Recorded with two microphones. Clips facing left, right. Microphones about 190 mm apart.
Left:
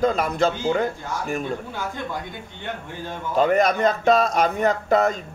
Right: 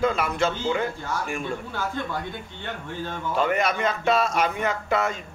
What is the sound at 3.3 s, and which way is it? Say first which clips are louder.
A man's voice: left 6 dB; 40° left (ahead or behind).